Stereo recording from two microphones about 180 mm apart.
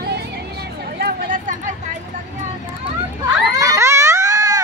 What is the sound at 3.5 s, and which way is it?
Baby cry, 20° right (ahead or behind).